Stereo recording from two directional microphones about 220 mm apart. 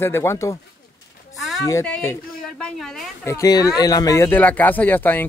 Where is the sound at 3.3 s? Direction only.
15° left (ahead or behind).